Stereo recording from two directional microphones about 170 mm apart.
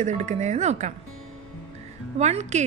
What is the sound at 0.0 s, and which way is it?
Speech, 40° right (ahead or behind).